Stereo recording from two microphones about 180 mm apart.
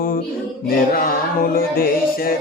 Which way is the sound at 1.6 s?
55° left (ahead or behind).